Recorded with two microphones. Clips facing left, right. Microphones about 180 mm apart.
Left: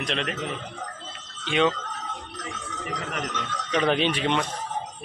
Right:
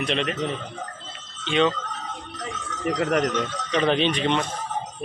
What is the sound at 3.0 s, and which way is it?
Speech, 55° right (ahead or behind).